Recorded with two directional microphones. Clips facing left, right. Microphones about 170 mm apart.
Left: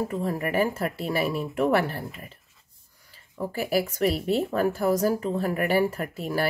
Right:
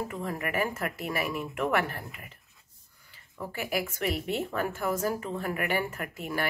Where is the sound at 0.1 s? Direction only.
35° left (ahead or behind).